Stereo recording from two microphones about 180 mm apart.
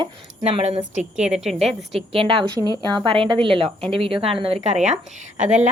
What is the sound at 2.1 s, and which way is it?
A woman's voice, 30° right (ahead or behind).